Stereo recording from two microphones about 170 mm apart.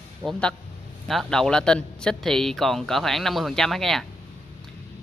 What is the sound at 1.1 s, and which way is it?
Speech, centre (ahead or behind).